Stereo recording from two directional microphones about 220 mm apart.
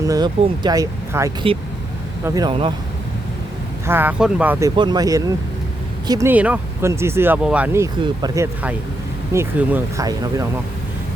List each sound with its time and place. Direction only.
0.0 s speech: 15° right (ahead or behind)
3.8 s speech: 10° right (ahead or behind)
4.8 s speech: 20° right (ahead or behind)